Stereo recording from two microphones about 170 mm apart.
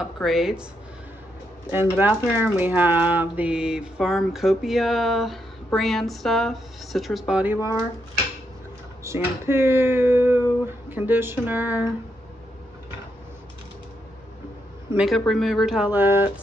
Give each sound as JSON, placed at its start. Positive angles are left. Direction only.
{"t": 0.0, "sound": "speech", "side_deg": 0}
{"t": 1.7, "sound": "speech", "side_deg": -10}
{"t": 9.0, "sound": "speech", "side_deg": -15}
{"t": 15.0, "sound": "speech", "side_deg": 0}